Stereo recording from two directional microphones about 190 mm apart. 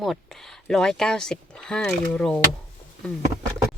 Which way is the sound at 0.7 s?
5° left (ahead or behind).